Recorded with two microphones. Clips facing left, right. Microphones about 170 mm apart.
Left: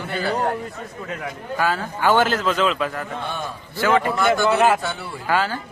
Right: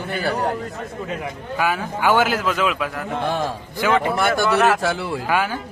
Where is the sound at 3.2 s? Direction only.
90° right.